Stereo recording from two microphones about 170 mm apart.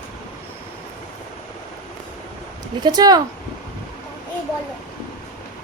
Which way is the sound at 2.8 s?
25° right (ahead or behind).